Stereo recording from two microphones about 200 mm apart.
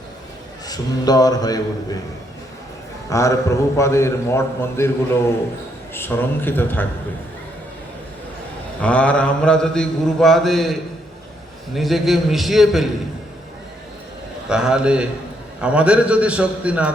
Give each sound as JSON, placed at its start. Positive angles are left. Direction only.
{"t": 0.7, "sound": "a man's voice", "side_deg": 20}
{"t": 3.1, "sound": "a man's voice", "side_deg": 15}
{"t": 5.9, "sound": "a man's voice", "side_deg": 10}
{"t": 8.8, "sound": "mantra", "side_deg": 5}
{"t": 14.4, "sound": "mantra", "side_deg": -5}
{"t": 15.6, "sound": "a man's voice", "side_deg": -5}